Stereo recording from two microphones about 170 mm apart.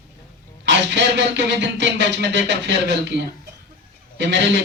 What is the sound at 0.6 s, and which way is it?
Speech, 90° right.